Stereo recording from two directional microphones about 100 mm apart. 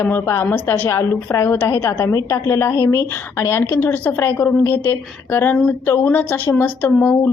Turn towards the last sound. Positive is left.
turn(degrees=20)  # may be behind; listen again after turning